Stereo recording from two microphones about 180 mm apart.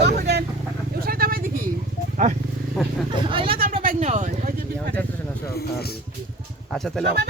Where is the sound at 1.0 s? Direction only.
55° right (ahead or behind).